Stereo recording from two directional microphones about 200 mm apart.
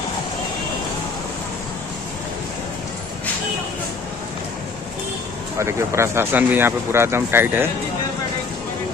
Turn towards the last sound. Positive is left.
turn(degrees=-10)  # may be behind; listen again after turning